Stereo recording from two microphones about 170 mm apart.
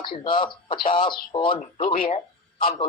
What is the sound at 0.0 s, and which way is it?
Speech, 30° left (ahead or behind).